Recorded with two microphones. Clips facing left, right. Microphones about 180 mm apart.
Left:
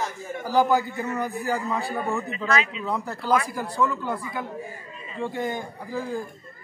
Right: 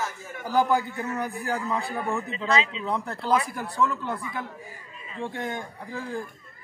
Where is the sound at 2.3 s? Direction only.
25° right (ahead or behind).